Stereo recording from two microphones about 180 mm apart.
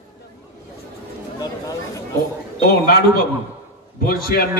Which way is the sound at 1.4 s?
20° left (ahead or behind).